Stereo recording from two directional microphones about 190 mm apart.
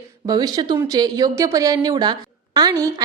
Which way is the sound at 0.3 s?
20° right (ahead or behind).